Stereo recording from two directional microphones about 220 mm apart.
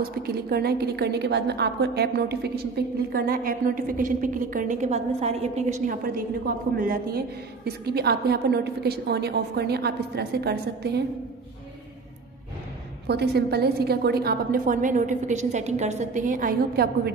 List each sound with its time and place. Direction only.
0.0 s a woman's voice: 45° right (ahead or behind)
13.0 s a woman's voice: 45° right (ahead or behind)